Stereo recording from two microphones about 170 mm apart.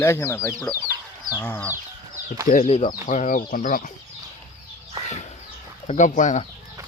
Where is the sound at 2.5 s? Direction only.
45° left (ahead or behind).